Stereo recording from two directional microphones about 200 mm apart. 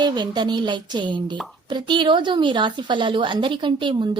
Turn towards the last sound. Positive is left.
turn(degrees=-25)  # may be behind; listen again after turning